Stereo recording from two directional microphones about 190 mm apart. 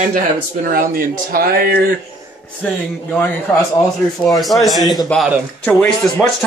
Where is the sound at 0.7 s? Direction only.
50° right (ahead or behind).